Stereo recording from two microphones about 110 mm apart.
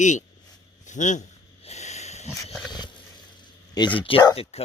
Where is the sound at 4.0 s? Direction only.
50° left (ahead or behind).